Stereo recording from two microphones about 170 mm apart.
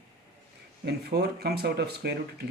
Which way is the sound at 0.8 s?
70° right (ahead or behind).